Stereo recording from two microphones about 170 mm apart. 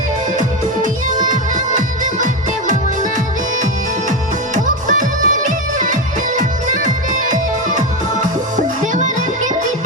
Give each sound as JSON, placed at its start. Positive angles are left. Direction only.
{"t": 0.8, "sound": "music", "side_deg": -45}
{"t": 4.5, "sound": "music", "side_deg": -50}
{"t": 7.7, "sound": "music", "side_deg": -45}